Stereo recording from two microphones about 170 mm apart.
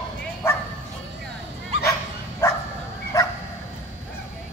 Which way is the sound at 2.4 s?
15° left (ahead or behind).